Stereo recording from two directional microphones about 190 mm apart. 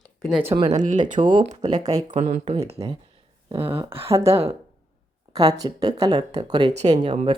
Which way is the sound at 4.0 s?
15° right (ahead or behind).